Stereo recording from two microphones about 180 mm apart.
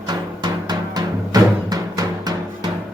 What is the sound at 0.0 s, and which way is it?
Music, 25° right (ahead or behind).